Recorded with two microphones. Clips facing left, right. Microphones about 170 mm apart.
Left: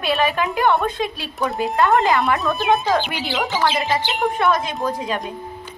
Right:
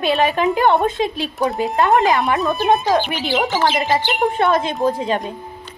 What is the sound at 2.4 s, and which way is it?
Speech, centre (ahead or behind).